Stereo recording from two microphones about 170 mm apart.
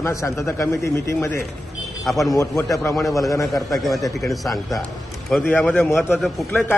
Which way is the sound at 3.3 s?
20° left (ahead or behind).